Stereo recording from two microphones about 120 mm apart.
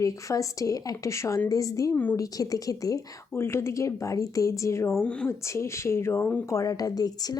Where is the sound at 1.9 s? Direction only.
15° left (ahead or behind).